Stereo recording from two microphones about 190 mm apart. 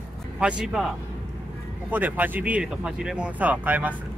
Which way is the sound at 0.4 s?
5° right (ahead or behind).